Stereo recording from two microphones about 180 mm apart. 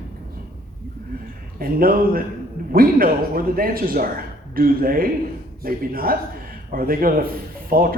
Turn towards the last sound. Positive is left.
turn(degrees=-55)  # may be behind; listen again after turning